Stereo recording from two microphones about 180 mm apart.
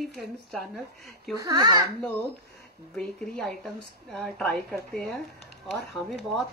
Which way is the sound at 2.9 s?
5° left (ahead or behind).